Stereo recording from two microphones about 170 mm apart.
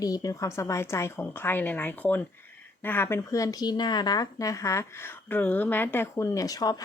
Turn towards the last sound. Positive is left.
turn(degrees=20)  # may be behind; listen again after turning